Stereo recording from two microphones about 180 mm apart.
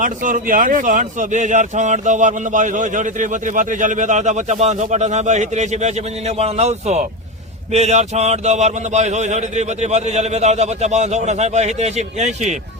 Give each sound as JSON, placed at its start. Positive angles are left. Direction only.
{"t": 0.0, "sound": "a man's voice", "side_deg": -45}